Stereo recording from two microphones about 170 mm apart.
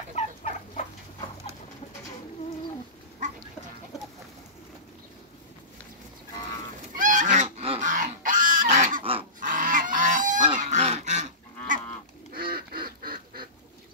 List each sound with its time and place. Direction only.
0.1 s bird: 45° left (ahead or behind)
7.0 s goose: 50° right (ahead or behind)
7.4 s goose: 35° right (ahead or behind)
7.8 s pig: 50° right (ahead or behind)
8.7 s goose: 50° right (ahead or behind)
10.6 s duck: 45° right (ahead or behind)
12.4 s duck: 60° right (ahead or behind)